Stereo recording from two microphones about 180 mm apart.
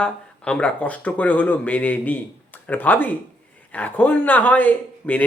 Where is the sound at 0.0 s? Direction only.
5° left (ahead or behind).